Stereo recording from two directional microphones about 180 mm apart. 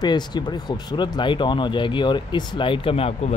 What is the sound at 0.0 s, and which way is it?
Speech, 25° left (ahead or behind).